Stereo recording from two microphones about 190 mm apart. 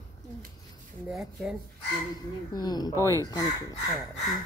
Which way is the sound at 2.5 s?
20° left (ahead or behind).